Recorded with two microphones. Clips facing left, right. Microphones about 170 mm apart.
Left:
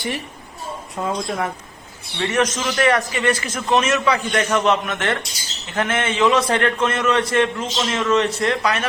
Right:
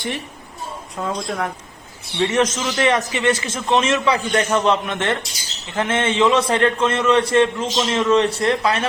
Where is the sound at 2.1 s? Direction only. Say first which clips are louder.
Right 2 dB; 25° right (ahead or behind).